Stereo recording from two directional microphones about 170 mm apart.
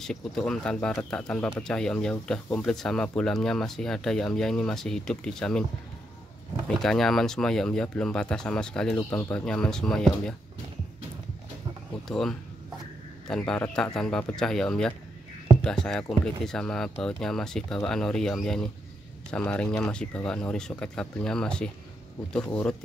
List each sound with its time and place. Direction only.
0.0 s speech: 5° left (ahead or behind)
6.8 s speech: centre (ahead or behind)
12.1 s speech: 5° left (ahead or behind)